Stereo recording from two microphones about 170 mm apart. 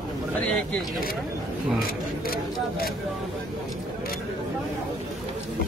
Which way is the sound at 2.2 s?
60° left (ahead or behind).